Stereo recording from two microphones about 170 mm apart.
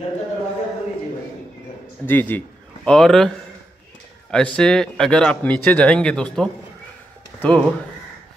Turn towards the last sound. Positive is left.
turn(degrees=5)  # may be behind; listen again after turning